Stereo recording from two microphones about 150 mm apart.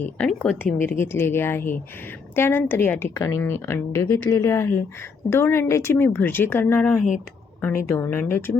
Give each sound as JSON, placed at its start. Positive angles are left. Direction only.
{"t": 0.0, "sound": "a woman's voice", "side_deg": 5}